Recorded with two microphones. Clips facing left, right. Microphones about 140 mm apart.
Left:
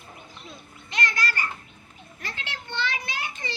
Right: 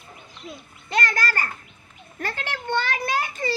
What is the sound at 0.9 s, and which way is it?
A child's voice, 45° right (ahead or behind).